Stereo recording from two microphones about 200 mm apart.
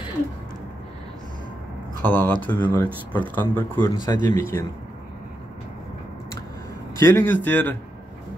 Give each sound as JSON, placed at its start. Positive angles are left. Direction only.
{"t": 2.0, "sound": "speech", "side_deg": 10}
{"t": 7.0, "sound": "speech", "side_deg": 10}